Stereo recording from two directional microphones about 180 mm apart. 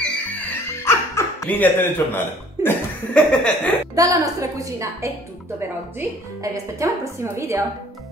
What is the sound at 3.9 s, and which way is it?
A woman's voice, 20° right (ahead or behind).